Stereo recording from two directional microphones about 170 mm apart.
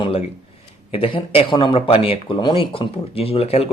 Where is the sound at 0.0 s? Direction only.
35° left (ahead or behind).